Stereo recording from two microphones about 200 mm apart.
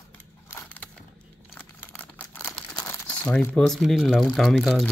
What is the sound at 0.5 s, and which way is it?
Crushing, 10° left (ahead or behind).